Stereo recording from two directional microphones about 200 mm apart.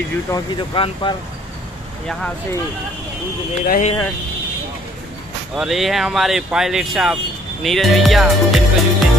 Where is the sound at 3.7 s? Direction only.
35° left (ahead or behind).